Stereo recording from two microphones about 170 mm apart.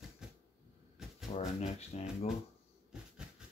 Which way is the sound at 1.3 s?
40° left (ahead or behind).